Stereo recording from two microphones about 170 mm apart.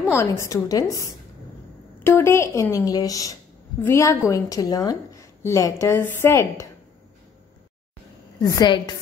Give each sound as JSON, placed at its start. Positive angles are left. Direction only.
{"t": 0.1, "sound": "a woman's voice", "side_deg": 15}
{"t": 8.4, "sound": "a woman's voice", "side_deg": 20}